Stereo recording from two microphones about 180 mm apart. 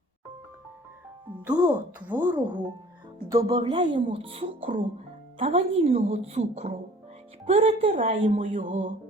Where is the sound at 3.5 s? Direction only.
30° right (ahead or behind).